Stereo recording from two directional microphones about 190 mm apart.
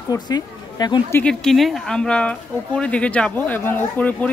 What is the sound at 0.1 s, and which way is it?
A woman's voice, 20° left (ahead or behind).